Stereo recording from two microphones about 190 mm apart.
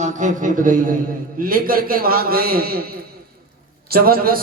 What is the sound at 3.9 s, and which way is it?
Speech, 50° right (ahead or behind).